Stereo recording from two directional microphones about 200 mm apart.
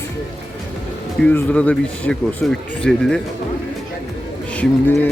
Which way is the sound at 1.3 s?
10° left (ahead or behind).